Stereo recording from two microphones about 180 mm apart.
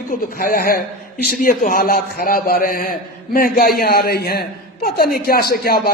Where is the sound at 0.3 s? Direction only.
55° left (ahead or behind).